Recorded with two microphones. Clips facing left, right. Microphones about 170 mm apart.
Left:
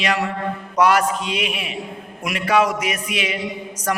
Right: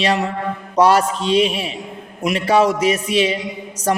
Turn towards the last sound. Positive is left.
turn(degrees=-30)  # may be behind; listen again after turning